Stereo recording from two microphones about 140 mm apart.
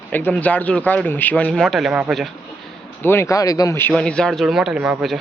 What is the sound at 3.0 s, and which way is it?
Speech, 20° left (ahead or behind).